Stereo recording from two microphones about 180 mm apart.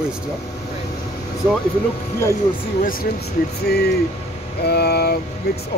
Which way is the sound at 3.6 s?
65° left (ahead or behind).